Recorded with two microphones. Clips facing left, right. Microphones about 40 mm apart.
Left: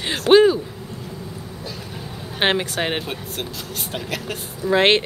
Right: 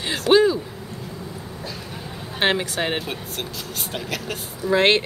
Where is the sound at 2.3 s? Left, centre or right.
Centre.